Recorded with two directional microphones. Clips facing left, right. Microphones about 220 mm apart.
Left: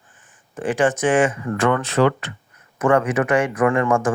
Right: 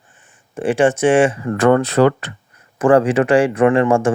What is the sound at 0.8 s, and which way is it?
Speech, 25° right (ahead or behind).